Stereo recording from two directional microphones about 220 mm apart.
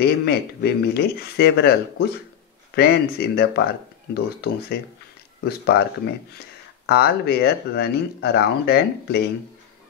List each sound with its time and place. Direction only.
0.0 s speech: 45° left (ahead or behind)